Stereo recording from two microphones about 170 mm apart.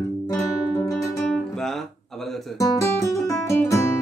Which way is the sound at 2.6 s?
15° left (ahead or behind).